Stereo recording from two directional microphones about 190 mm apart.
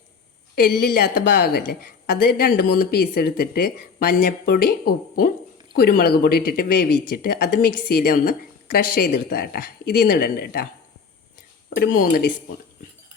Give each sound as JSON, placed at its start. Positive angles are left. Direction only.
{"t": 0.5, "sound": "speech", "side_deg": 55}
{"t": 11.7, "sound": "speech", "side_deg": 55}